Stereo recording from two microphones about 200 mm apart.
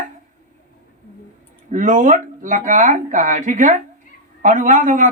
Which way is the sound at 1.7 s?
40° right (ahead or behind).